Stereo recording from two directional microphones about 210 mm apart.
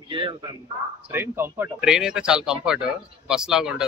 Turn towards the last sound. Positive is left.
turn(degrees=-5)  # may be behind; listen again after turning